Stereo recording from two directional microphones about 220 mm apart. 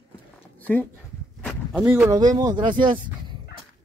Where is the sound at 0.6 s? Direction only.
10° left (ahead or behind).